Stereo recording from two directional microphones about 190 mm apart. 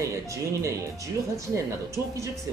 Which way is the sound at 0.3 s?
15° right (ahead or behind).